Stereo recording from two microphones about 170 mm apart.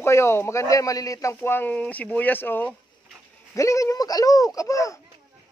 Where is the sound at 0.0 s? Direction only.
15° left (ahead or behind).